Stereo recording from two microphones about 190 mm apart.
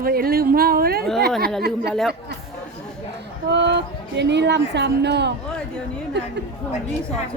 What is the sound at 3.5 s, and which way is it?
Speech, 65° right (ahead or behind).